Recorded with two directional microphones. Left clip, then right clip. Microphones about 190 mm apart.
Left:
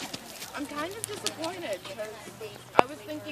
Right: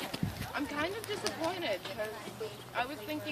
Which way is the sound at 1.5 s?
45° left (ahead or behind).